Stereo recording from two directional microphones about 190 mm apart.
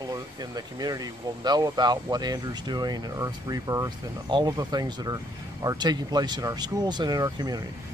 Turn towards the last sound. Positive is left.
turn(degrees=-20)  # may be behind; listen again after turning